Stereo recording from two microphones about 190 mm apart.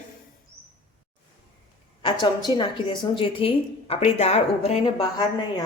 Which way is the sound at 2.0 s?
25° left (ahead or behind).